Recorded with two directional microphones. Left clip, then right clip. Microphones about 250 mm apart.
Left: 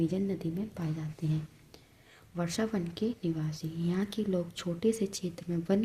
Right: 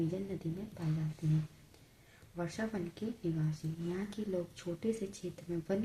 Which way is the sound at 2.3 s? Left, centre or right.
Left.